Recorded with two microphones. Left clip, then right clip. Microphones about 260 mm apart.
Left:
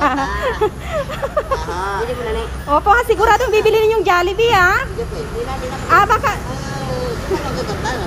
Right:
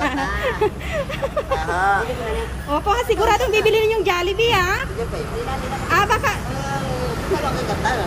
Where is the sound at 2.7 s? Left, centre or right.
Centre.